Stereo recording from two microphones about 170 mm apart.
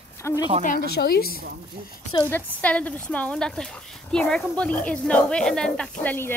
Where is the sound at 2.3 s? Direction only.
10° left (ahead or behind).